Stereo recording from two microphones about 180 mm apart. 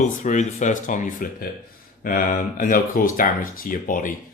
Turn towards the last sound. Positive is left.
turn(degrees=50)  # may be behind; listen again after turning